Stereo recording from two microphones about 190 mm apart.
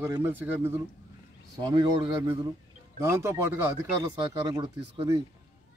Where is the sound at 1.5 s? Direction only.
20° right (ahead or behind).